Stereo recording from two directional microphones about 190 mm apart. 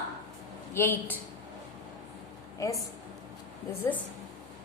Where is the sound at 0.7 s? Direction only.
10° left (ahead or behind).